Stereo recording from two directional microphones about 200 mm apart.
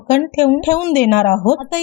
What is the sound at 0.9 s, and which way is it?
Speech, 45° left (ahead or behind).